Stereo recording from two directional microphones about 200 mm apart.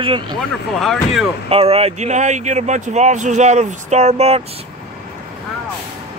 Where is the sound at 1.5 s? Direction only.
30° right (ahead or behind).